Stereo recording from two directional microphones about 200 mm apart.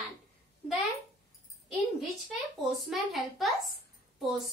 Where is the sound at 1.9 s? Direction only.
Centre (ahead or behind).